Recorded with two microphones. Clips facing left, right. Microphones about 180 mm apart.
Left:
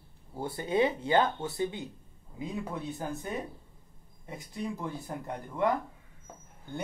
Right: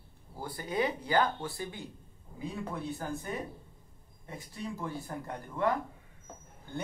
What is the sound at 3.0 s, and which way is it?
Speech, 20° left (ahead or behind).